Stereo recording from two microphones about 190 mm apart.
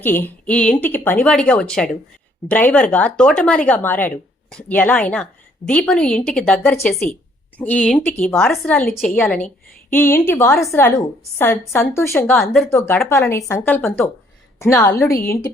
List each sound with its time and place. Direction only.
0.0 s a woman's voice: 10° left (ahead or behind)